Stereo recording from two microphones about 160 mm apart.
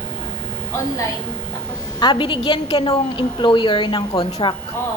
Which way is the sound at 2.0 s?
30° left (ahead or behind).